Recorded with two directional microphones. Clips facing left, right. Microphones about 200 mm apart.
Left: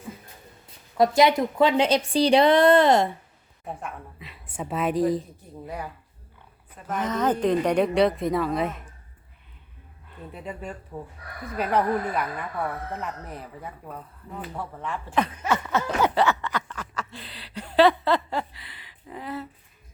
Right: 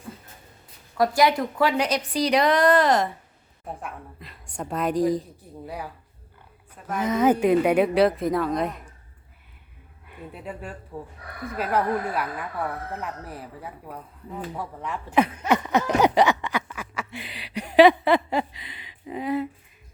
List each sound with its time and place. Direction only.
0.9 s a woman's voice: 20° left (ahead or behind)
3.8 s a woman's voice: centre (ahead or behind)
10.1 s a woman's voice: 5° right (ahead or behind)
16.0 s snicker: 15° right (ahead or behind)